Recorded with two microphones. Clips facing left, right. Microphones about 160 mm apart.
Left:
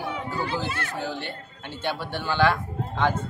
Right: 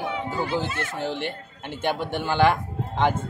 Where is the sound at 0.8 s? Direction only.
20° right (ahead or behind).